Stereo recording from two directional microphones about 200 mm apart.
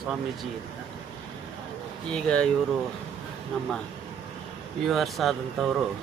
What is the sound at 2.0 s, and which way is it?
Speech, 5° left (ahead or behind).